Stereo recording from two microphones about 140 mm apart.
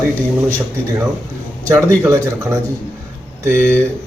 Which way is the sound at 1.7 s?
20° right (ahead or behind).